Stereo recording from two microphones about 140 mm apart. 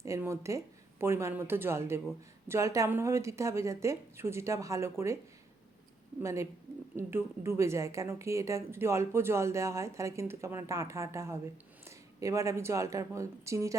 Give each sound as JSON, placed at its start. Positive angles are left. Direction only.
{"t": 0.0, "sound": "a woman's voice", "side_deg": -20}
{"t": 6.2, "sound": "a woman's voice", "side_deg": -20}